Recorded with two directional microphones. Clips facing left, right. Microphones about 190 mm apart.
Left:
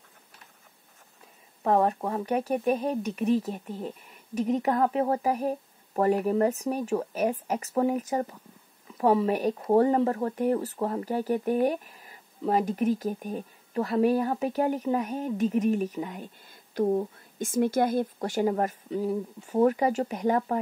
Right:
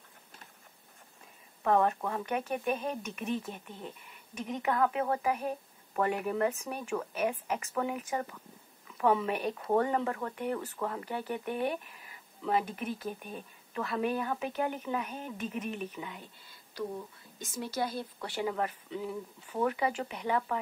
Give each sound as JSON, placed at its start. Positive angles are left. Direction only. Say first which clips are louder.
{"t": 1.6, "sound": "speech", "louder": "left 3 dB", "side_deg": 30}